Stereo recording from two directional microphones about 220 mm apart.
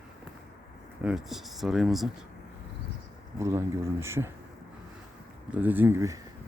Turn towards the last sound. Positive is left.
turn(degrees=-10)  # may be behind; listen again after turning